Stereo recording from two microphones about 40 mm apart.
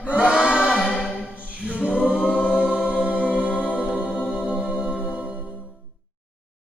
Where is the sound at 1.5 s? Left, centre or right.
Right.